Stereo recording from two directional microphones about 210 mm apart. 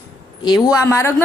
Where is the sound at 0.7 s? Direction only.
15° left (ahead or behind).